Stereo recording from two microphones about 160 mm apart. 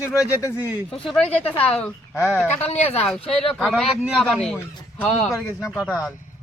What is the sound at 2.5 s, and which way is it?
Speech, 40° left (ahead or behind).